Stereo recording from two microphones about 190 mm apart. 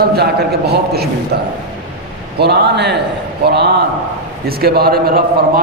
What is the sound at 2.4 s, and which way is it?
A man's voice, 60° right (ahead or behind).